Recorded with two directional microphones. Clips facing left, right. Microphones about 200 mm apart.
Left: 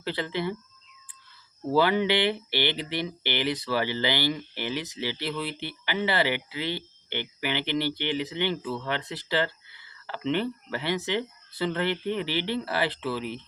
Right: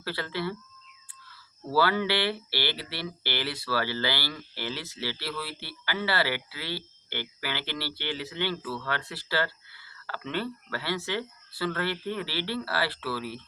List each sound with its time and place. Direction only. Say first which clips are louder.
0.0 s speech: left 3 dB; 20° left (ahead or behind)
1.7 s speech: left 3 dB; 20° left (ahead or behind)